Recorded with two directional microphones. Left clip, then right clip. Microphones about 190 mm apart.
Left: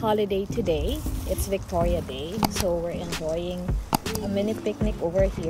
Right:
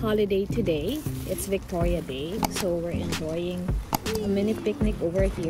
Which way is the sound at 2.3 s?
Centre (ahead or behind).